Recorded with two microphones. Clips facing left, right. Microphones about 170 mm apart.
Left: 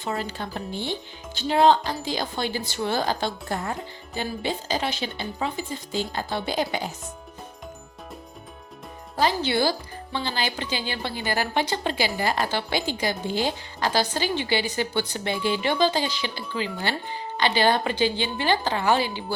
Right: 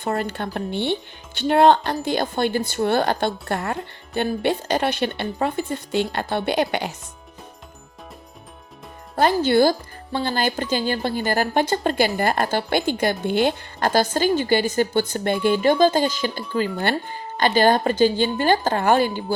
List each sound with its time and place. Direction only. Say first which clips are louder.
0.0 s a woman's voice: right 5 dB; 55° right (ahead or behind)
9.1 s speech: right 6 dB; 50° right (ahead or behind)